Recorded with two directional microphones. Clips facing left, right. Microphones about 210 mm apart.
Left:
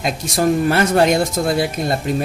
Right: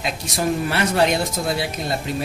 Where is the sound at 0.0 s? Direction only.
45° left (ahead or behind).